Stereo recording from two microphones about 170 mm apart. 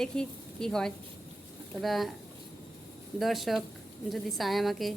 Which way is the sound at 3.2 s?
Centre (ahead or behind).